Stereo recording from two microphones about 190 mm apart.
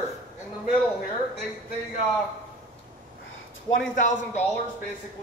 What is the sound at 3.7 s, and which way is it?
Speech, 15° left (ahead or behind).